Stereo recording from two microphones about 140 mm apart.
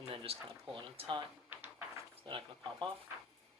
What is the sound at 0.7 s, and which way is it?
Speech, 35° right (ahead or behind).